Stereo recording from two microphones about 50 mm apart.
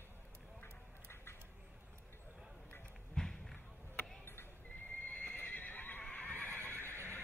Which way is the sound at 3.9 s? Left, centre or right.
Left.